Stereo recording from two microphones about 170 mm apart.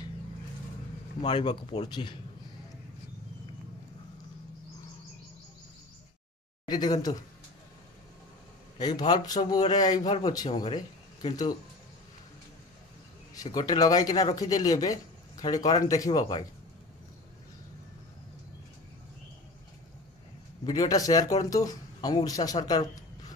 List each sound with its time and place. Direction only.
1.2 s speech: 25° left (ahead or behind)
6.7 s speech: 25° left (ahead or behind)
8.7 s speech: 25° left (ahead or behind)
13.3 s speech: 20° left (ahead or behind)
20.6 s speech: 20° left (ahead or behind)